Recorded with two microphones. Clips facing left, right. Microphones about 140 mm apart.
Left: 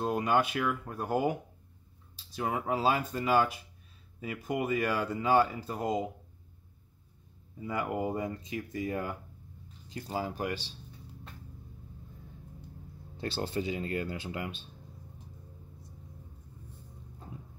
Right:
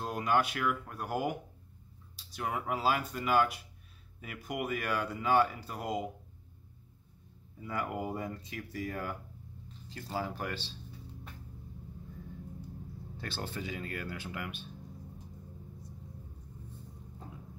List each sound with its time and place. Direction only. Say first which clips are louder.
0.0 s speech: left 3 dB; 25° left (ahead or behind)
8.0 s speech: left 4 dB; 20° left (ahead or behind)
13.2 s speech: left 7 dB; 25° left (ahead or behind)